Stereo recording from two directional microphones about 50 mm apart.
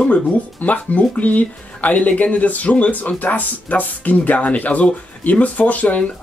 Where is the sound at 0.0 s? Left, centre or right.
Left.